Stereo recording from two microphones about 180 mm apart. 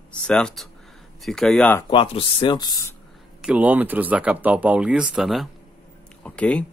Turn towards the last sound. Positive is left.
turn(degrees=5)  # may be behind; listen again after turning